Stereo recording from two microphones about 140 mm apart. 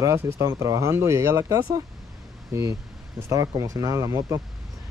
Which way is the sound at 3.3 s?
25° right (ahead or behind).